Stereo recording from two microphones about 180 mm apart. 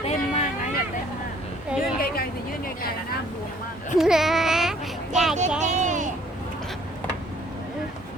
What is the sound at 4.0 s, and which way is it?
Speech, centre (ahead or behind).